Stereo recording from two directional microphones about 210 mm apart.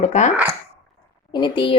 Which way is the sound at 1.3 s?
20° left (ahead or behind).